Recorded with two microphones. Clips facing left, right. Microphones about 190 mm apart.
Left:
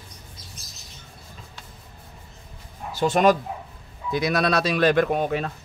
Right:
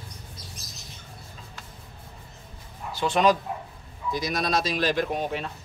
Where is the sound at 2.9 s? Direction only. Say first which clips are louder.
Left 3 dB; 45° left (ahead or behind).